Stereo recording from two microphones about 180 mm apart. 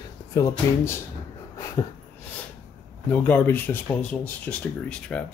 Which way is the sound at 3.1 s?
10° left (ahead or behind).